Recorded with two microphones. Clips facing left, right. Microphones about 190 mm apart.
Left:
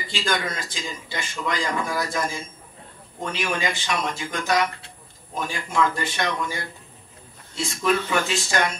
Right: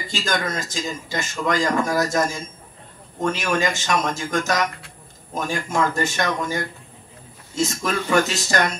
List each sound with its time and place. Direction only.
0.0 s a man's voice: 45° right (ahead or behind)